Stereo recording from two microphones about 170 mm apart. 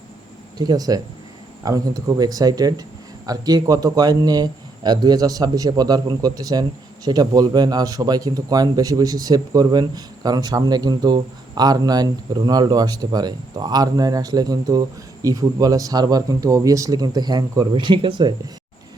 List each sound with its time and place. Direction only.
0.6 s a man's voice: 20° right (ahead or behind)